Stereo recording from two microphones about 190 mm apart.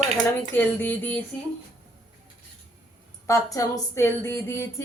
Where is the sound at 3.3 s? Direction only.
15° left (ahead or behind).